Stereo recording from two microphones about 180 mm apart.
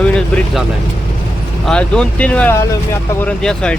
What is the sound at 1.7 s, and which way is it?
Speech, 5° left (ahead or behind).